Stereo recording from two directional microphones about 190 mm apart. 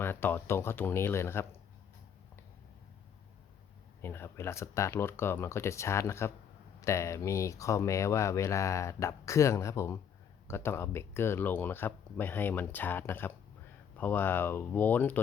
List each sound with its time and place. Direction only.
0.0 s speech: 10° left (ahead or behind)
4.0 s speech: 10° left (ahead or behind)